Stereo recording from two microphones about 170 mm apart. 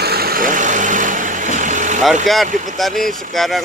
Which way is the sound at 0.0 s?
65° right (ahead or behind).